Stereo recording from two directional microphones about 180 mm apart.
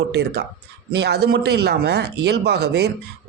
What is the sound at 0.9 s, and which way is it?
Speech, 65° right (ahead or behind).